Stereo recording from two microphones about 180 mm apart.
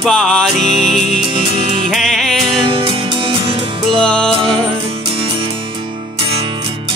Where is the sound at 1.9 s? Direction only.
Centre (ahead or behind).